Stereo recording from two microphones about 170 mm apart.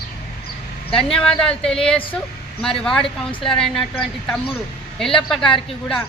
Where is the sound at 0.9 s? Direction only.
35° left (ahead or behind).